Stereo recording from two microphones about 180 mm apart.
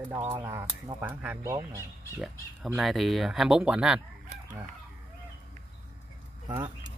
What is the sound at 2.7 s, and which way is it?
A man's voice, centre (ahead or behind).